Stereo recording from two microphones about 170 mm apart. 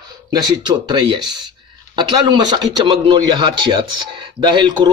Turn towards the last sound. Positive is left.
turn(degrees=-25)  # may be behind; listen again after turning